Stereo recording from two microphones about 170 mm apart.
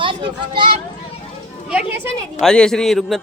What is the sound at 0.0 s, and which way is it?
Speech, 30° right (ahead or behind).